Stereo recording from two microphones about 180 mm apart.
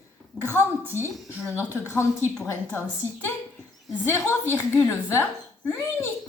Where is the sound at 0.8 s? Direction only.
15° right (ahead or behind).